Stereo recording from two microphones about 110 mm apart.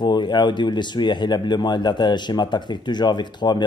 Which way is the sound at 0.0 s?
45° left (ahead or behind).